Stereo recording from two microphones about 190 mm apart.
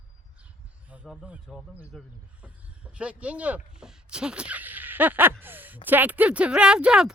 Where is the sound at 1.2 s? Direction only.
5° right (ahead or behind).